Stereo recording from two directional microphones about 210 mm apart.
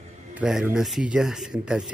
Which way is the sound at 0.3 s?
5° right (ahead or behind).